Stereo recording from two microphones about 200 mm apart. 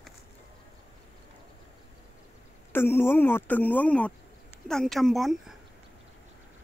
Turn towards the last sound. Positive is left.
turn(degrees=0)  # may be behind; listen again after turning